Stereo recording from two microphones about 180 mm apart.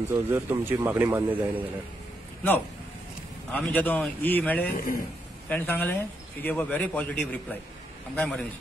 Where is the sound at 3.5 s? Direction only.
5° left (ahead or behind).